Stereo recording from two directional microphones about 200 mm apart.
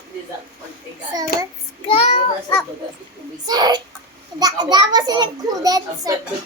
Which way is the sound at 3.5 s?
20° right (ahead or behind).